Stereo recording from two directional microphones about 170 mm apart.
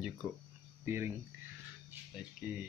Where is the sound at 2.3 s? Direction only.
10° right (ahead or behind).